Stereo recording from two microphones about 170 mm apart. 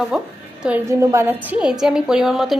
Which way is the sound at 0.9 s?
15° right (ahead or behind).